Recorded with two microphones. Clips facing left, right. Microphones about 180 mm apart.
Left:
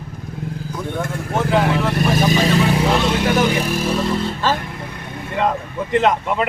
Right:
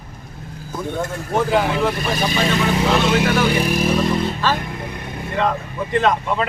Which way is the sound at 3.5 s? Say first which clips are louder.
Right 1 dB; 15° right (ahead or behind).